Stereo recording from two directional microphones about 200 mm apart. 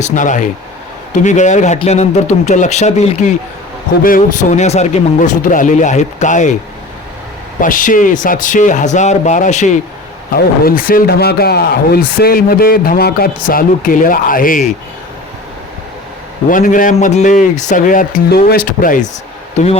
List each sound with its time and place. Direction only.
0.0 s speech: 40° left (ahead or behind)
7.6 s speech: 40° left (ahead or behind)
10.3 s speech: 45° left (ahead or behind)
16.5 s speech: 40° left (ahead or behind)